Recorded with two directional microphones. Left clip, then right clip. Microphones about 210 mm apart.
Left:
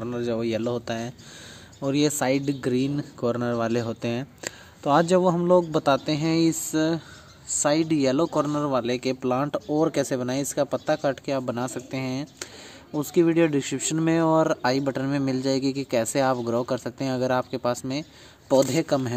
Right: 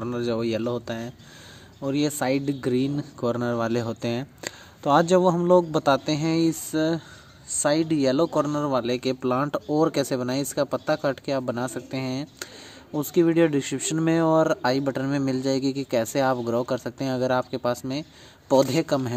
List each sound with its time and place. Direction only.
0.0 s speech: 5° right (ahead or behind)